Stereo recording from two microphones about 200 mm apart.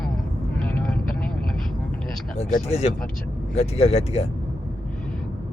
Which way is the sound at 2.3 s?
35° left (ahead or behind).